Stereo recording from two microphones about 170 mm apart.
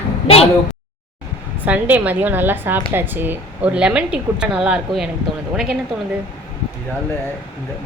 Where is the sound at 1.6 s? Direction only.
10° right (ahead or behind).